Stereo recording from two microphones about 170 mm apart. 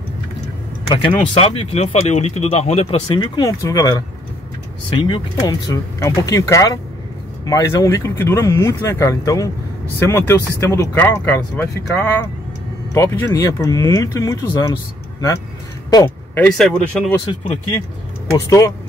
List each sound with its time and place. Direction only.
0.8 s speech: 25° left (ahead or behind)
15.9 s speech: 20° left (ahead or behind)
16.4 s speech: 5° left (ahead or behind)
17.3 s speech: 30° left (ahead or behind)